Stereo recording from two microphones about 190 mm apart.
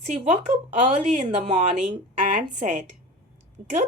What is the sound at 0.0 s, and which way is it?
A woman's voice, 35° right (ahead or behind).